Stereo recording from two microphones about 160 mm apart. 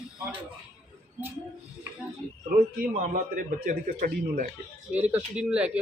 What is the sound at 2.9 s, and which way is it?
Speech, 60° right (ahead or behind).